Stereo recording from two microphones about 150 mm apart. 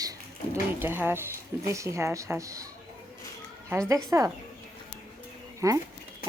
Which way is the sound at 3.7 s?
15° right (ahead or behind).